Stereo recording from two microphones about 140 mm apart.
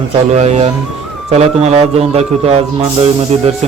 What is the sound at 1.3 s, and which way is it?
A man's voice, 50° right (ahead or behind).